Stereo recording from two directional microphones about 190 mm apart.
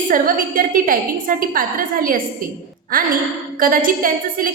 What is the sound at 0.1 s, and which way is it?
A woman's voice, 45° right (ahead or behind).